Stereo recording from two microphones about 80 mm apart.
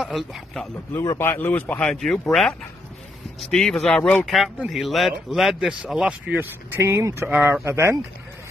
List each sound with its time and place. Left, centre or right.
0.0 s a man's voice: centre
1.1 s speech: left
1.8 s a man's voice: centre; by 6.8 s right
6.8 s speech: right
7.2 s speech: right
7.6 s speech: right